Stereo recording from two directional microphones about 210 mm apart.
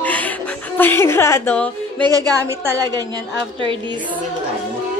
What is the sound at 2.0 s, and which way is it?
A woman's voice, 15° right (ahead or behind).